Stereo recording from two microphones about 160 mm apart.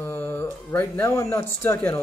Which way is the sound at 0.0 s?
15° left (ahead or behind).